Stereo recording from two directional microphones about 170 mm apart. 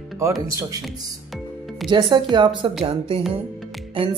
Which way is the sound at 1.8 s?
25° right (ahead or behind).